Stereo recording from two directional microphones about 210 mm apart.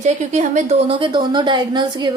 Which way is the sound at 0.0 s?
35° right (ahead or behind).